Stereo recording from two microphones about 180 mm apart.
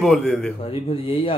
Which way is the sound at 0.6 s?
30° left (ahead or behind).